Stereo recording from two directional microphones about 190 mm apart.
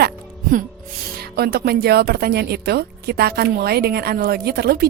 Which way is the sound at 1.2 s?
55° right (ahead or behind).